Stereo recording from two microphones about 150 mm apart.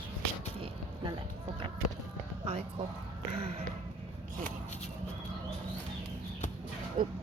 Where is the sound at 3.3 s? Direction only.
40° right (ahead or behind).